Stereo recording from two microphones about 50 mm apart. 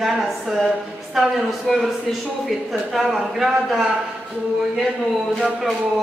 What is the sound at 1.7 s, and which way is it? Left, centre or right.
Speech, centre.